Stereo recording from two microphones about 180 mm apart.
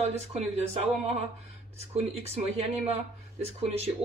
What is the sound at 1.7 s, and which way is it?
Speech, 35° right (ahead or behind).